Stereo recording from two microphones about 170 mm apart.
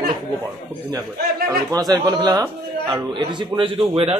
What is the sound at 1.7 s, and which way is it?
A man's voice, 20° right (ahead or behind).